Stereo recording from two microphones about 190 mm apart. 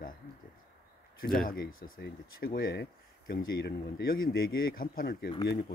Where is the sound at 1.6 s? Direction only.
90° left.